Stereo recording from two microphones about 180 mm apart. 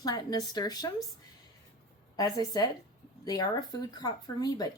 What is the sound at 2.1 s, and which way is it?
Speech, 20° left (ahead or behind).